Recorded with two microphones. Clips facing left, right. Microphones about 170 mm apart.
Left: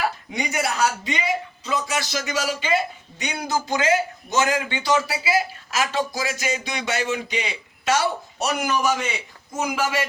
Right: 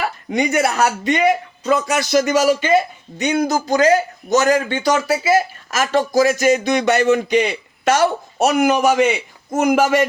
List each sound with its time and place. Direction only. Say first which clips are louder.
0.3 s a man's voice: right 8 dB; 60° right (ahead or behind)